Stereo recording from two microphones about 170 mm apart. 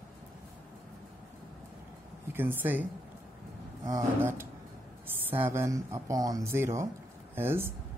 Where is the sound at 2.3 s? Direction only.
10° right (ahead or behind).